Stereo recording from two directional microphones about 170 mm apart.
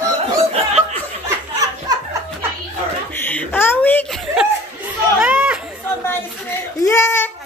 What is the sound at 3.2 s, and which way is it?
Wail, 10° left (ahead or behind).